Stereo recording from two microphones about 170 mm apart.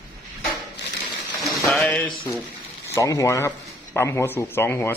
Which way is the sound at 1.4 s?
Centre (ahead or behind).